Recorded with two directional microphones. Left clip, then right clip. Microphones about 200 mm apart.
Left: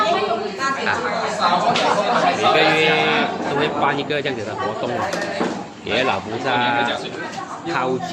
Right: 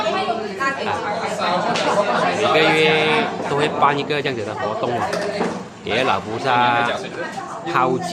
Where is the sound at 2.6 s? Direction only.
20° right (ahead or behind).